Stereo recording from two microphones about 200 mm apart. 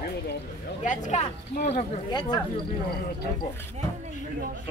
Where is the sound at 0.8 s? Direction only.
40° left (ahead or behind).